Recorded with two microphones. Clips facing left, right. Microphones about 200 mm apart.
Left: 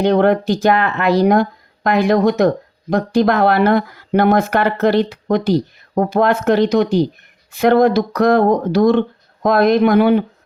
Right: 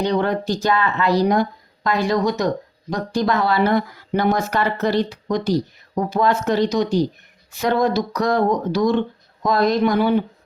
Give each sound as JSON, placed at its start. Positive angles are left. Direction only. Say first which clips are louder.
{"t": 0.0, "sound": "speech", "louder": "left 7 dB", "side_deg": 60}